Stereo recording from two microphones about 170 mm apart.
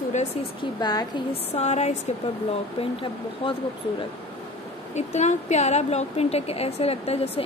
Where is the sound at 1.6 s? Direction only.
40° left (ahead or behind).